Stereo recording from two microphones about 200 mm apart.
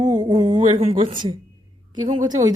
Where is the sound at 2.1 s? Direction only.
20° right (ahead or behind).